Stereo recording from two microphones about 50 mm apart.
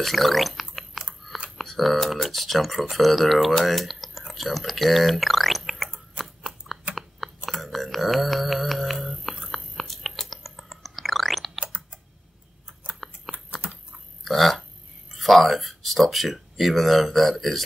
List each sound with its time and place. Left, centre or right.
0.0 s chewing: centre
1.6 s speech: centre
4.3 s drip: centre
6.1 s a sound: centre
11.6 s typing: right
13.3 s computer keyboard: centre
14.2 s a sound: centre
15.1 s speech: centre